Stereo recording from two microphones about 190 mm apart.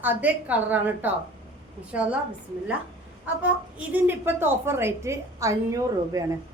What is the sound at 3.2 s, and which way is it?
A woman's voice, 5° right (ahead or behind).